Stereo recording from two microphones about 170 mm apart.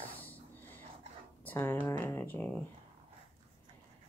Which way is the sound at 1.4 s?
15° left (ahead or behind).